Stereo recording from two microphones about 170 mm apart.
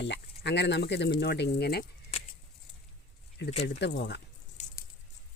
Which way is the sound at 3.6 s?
85° left.